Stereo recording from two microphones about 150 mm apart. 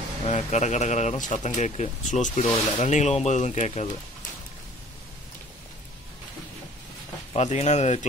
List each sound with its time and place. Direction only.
0.2 s speech: 50° left (ahead or behind)
2.4 s speech: 30° left (ahead or behind)
2.8 s speech: 50° left (ahead or behind)
7.3 s speech: 50° left (ahead or behind)